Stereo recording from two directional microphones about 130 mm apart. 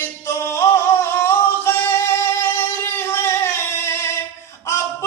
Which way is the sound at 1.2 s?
20° left (ahead or behind).